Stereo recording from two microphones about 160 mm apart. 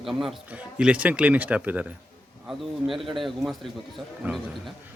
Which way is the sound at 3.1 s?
Centre (ahead or behind).